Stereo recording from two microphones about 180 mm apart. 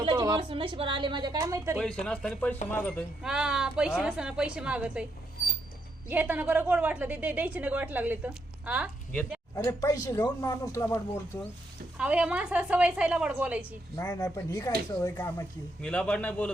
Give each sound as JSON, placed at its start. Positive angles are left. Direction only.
{"t": 0.0, "sound": "a woman's voice", "side_deg": -25}
{"t": 2.0, "sound": "a woman's voice", "side_deg": 5}
{"t": 3.2, "sound": "a woman's voice", "side_deg": -5}
{"t": 6.1, "sound": "a woman's voice", "side_deg": -10}
{"t": 9.6, "sound": "speech", "side_deg": 20}
{"t": 11.9, "sound": "a woman's voice", "side_deg": -5}
{"t": 13.9, "sound": "speech", "side_deg": 20}
{"t": 15.8, "sound": "a woman's voice", "side_deg": 5}